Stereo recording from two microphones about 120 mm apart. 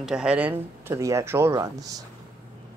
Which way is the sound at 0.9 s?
25° right (ahead or behind).